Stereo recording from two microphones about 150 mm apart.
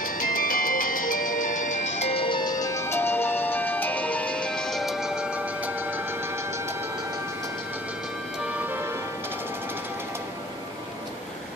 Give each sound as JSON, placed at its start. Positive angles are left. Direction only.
{"t": 0.0, "sound": "music", "side_deg": 70}
{"t": 8.6, "sound": "music", "side_deg": -15}